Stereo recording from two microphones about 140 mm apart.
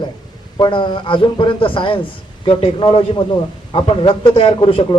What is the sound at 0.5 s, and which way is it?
Speech, 35° left (ahead or behind).